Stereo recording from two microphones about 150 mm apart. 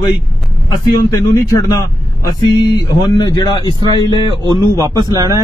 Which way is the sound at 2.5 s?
25° left (ahead or behind).